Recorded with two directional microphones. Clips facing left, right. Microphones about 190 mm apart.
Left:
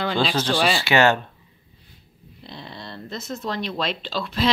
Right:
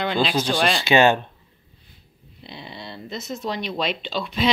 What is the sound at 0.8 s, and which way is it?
Speech, 20° right (ahead or behind).